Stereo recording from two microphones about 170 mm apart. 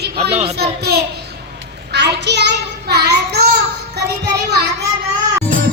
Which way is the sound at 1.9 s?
80° right.